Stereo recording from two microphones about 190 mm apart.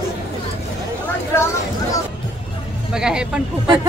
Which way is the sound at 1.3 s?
15° left (ahead or behind).